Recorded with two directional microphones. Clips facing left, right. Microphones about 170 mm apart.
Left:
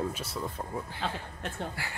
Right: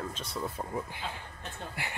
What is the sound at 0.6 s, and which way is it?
Speech, 15° right (ahead or behind).